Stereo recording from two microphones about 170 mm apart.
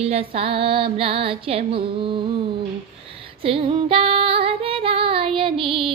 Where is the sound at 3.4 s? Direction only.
30° right (ahead or behind).